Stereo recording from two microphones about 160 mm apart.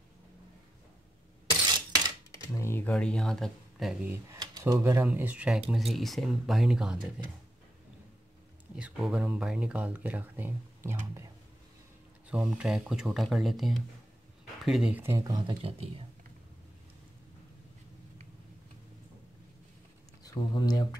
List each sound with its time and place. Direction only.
2.3 s speech: 15° left (ahead or behind); by 7.1 s 5° right (ahead or behind)
8.7 s speech: 5° right (ahead or behind)
12.3 s speech: 5° right (ahead or behind); by 16.1 s 35° right (ahead or behind)
20.2 s speech: 25° left (ahead or behind)